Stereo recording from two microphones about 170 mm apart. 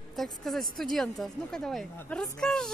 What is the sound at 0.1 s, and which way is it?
A woman's voice, centre (ahead or behind).